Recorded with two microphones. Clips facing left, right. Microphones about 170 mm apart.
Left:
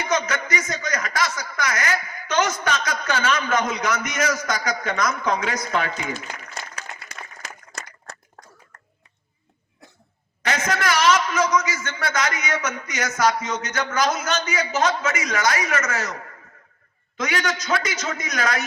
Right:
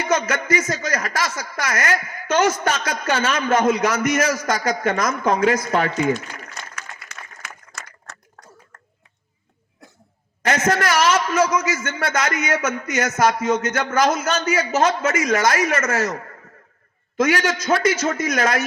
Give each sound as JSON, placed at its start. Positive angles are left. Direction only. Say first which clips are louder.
{"t": 0.1, "sound": "speech", "louder": "right 4 dB", "side_deg": -50}
{"t": 6.5, "sound": "applause", "louder": "left 1 dB", "side_deg": 35}
{"t": 8.7, "sound": "a sound", "louder": "right 1 dB", "side_deg": -90}
{"t": 10.4, "sound": "a man's voice", "louder": "right 4 dB", "side_deg": -50}